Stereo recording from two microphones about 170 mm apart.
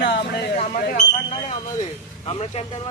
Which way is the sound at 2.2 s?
35° left (ahead or behind).